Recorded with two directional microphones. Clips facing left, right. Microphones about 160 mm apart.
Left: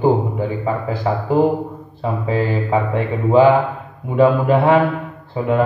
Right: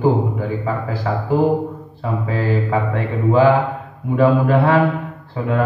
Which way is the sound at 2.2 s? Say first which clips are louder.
Left 1 dB; 20° left (ahead or behind).